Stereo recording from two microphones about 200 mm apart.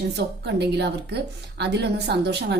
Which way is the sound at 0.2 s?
55° right (ahead or behind).